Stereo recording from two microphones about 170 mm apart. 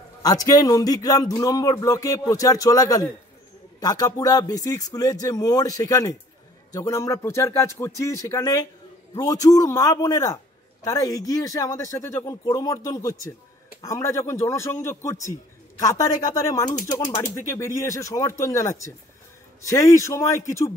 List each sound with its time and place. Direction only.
0.2 s a man's voice: 20° left (ahead or behind)